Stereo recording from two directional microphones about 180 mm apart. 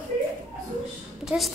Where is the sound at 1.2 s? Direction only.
Centre (ahead or behind).